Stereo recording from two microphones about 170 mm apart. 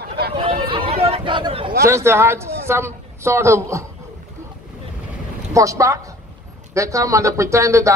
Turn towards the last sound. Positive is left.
turn(degrees=-20)  # may be behind; listen again after turning